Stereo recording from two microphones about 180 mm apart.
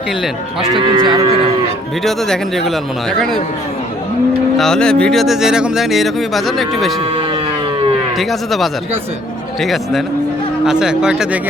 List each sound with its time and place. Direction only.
0.8 s cattle: 30° right (ahead or behind)
2.0 s speech: centre (ahead or behind)
4.5 s speech: 5° left (ahead or behind)
8.2 s speech: centre (ahead or behind)